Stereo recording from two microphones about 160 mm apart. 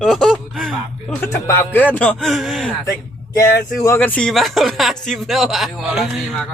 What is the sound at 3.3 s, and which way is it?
Speech, 20° left (ahead or behind).